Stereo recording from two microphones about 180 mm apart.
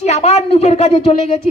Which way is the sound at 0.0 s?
35° left (ahead or behind).